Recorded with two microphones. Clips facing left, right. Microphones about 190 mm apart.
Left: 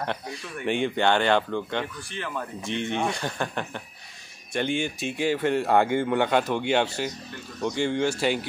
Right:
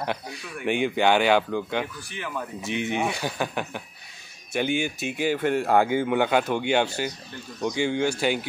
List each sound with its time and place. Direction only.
0.0 s speech: 5° right (ahead or behind)